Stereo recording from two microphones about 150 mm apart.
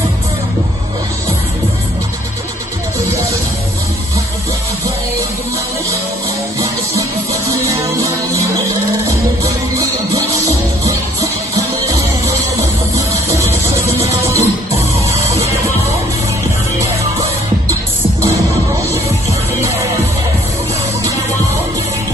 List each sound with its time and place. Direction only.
7.7 s music: 20° right (ahead or behind)
12.9 s music: 20° right (ahead or behind)